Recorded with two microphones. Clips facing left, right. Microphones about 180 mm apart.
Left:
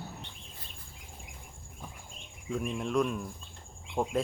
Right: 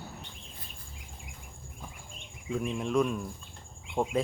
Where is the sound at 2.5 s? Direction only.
Centre (ahead or behind).